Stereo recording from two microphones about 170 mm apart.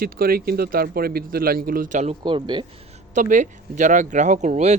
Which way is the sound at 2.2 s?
30° right (ahead or behind).